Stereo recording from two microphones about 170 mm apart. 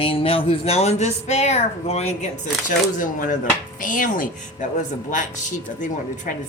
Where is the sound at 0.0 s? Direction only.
35° left (ahead or behind); by 4.3 s 50° left (ahead or behind).